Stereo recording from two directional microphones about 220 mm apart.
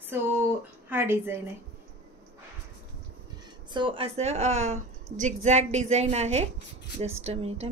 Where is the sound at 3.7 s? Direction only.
25° right (ahead or behind).